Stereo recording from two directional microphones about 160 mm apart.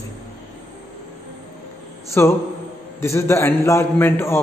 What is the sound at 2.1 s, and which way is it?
A man's voice, 15° left (ahead or behind).